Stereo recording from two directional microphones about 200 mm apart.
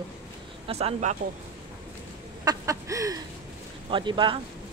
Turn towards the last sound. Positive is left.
turn(degrees=-25)  # may be behind; listen again after turning